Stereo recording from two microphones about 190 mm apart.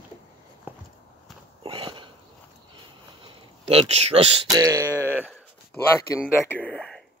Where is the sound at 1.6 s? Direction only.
25° right (ahead or behind).